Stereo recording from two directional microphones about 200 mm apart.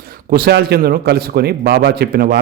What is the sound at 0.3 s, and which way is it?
A man's voice, 50° right (ahead or behind).